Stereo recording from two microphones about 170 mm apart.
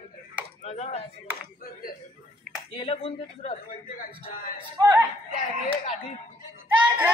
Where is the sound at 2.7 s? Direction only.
30° left (ahead or behind).